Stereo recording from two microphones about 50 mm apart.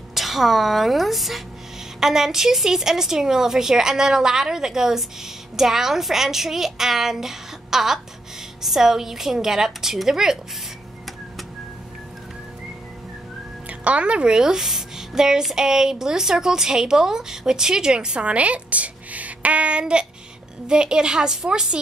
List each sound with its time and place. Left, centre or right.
0.1 s a woman's voice: centre
13.7 s a woman's voice: right